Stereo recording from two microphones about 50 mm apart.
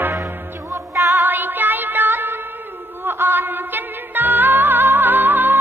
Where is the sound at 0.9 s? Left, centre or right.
Right.